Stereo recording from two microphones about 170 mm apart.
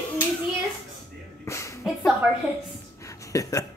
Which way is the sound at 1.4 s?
15° left (ahead or behind).